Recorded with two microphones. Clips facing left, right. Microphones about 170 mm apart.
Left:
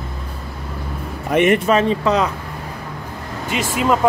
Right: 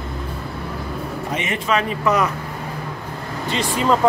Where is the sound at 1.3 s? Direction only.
60° left (ahead or behind).